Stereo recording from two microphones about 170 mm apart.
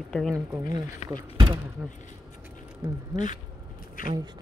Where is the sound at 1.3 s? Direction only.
30° right (ahead or behind).